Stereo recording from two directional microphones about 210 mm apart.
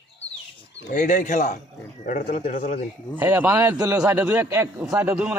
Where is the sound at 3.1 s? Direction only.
10° right (ahead or behind).